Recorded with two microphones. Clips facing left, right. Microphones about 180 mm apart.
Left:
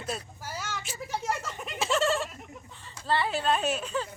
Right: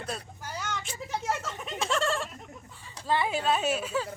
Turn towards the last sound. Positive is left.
turn(degrees=-5)  # may be behind; listen again after turning